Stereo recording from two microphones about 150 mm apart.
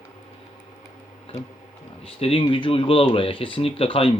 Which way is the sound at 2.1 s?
35° left (ahead or behind).